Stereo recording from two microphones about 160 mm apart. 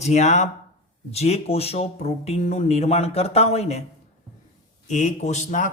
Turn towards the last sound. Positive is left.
turn(degrees=50)  # may be behind; listen again after turning